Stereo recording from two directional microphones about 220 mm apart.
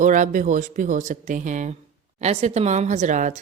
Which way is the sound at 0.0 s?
35° right (ahead or behind).